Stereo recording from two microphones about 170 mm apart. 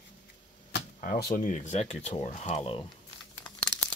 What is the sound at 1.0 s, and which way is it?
Speech, 55° left (ahead or behind).